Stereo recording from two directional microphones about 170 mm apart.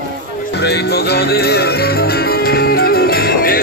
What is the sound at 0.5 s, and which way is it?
Music, 75° left (ahead or behind).